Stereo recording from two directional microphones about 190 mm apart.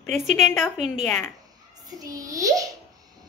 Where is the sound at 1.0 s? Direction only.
10° left (ahead or behind).